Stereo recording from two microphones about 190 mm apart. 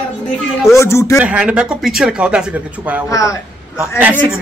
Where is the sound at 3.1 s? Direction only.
15° left (ahead or behind).